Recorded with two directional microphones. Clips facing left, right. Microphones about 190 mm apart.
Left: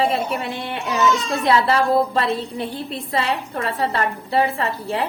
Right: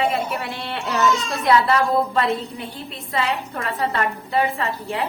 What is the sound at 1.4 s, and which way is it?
A woman's voice, 30° left (ahead or behind).